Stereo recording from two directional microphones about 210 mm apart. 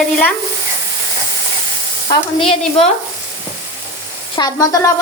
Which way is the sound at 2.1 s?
15° left (ahead or behind).